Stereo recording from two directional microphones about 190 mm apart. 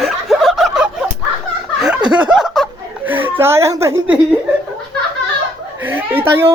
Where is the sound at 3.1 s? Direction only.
10° right (ahead or behind).